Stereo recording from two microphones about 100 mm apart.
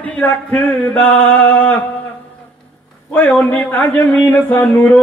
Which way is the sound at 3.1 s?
15° left (ahead or behind).